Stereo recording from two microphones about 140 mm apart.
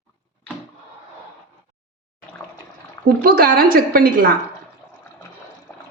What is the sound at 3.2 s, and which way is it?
A woman's voice, 90° right.